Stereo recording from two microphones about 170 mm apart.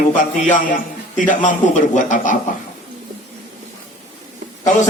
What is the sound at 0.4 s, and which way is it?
A man's voice, 50° left (ahead or behind).